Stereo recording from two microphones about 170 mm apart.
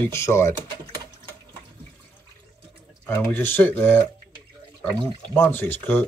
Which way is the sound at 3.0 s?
10° left (ahead or behind).